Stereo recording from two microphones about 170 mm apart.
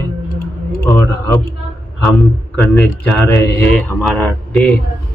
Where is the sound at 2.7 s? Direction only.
10° left (ahead or behind).